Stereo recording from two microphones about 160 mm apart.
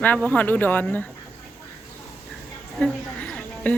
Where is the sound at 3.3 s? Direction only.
10° left (ahead or behind).